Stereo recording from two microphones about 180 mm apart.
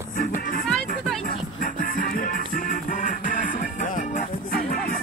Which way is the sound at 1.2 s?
50° left (ahead or behind).